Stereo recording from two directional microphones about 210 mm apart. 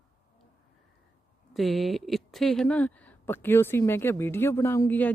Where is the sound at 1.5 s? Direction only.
Centre (ahead or behind).